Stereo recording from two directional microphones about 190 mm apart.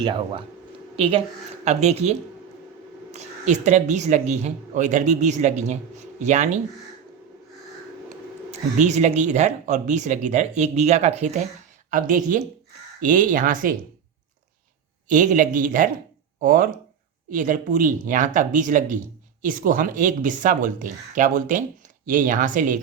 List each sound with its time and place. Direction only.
0.0 s a woman's voice: 25° right (ahead or behind)
8.4 s speech: 40° right (ahead or behind)
15.1 s speech: 40° right (ahead or behind)